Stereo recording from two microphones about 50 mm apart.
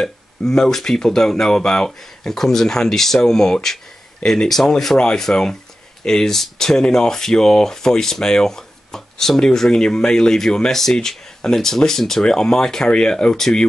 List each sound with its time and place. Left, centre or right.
0.0 s speech: centre